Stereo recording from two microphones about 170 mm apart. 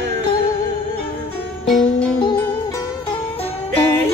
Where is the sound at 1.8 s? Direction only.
30° left (ahead or behind).